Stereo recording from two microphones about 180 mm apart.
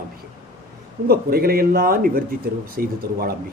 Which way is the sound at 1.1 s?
55° right (ahead or behind).